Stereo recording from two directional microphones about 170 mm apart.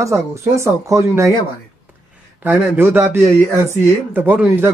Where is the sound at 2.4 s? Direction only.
10° right (ahead or behind).